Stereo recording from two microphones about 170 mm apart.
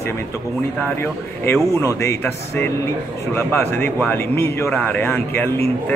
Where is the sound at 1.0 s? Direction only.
15° left (ahead or behind).